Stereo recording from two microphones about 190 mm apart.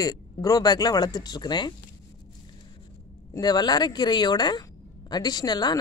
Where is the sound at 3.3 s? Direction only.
20° left (ahead or behind).